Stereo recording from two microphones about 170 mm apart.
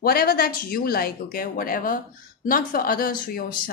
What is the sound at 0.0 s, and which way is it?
Speech, 60° left (ahead or behind).